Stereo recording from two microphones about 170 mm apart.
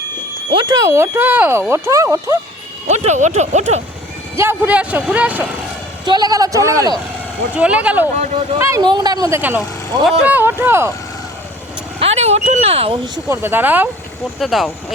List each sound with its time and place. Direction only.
0.5 s speech: 25° right (ahead or behind)
2.8 s speech: 40° right (ahead or behind)
4.4 s speech: 10° right (ahead or behind)
6.1 s speech: 25° right (ahead or behind)
7.5 s speech: 5° right (ahead or behind)
11.9 s speech: 40° right (ahead or behind)
13.2 s speech: 15° right (ahead or behind)
14.3 s speech: centre (ahead or behind)